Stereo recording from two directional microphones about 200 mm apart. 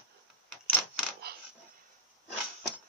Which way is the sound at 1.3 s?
50° right (ahead or behind).